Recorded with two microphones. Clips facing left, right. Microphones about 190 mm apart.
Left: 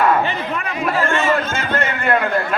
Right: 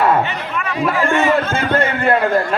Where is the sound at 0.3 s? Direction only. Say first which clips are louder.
Left 1 dB; 35° left (ahead or behind).